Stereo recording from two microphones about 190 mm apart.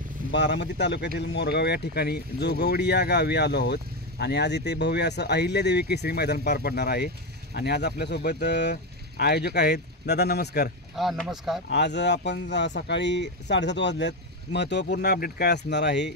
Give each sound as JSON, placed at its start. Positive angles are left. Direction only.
{"t": 0.3, "sound": "speech", "side_deg": 65}
{"t": 11.0, "sound": "speech", "side_deg": 0}
{"t": 11.7, "sound": "speech", "side_deg": 65}